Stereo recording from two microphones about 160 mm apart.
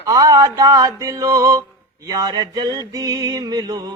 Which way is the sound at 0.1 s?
20° right (ahead or behind).